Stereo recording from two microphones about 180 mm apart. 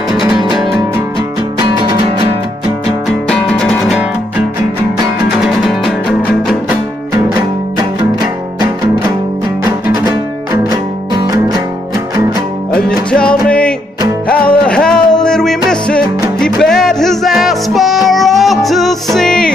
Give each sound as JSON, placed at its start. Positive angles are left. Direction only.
{"t": 3.3, "sound": "music", "side_deg": 5}
{"t": 5.4, "sound": "music", "side_deg": 0}
{"t": 11.1, "sound": "music", "side_deg": -20}
{"t": 12.7, "sound": "music", "side_deg": 5}